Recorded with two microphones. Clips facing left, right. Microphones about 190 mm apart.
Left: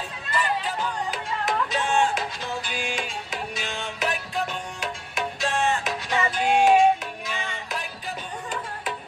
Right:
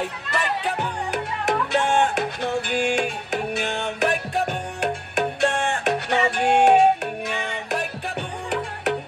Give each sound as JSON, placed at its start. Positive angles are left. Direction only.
{"t": 0.0, "sound": "music", "side_deg": -70}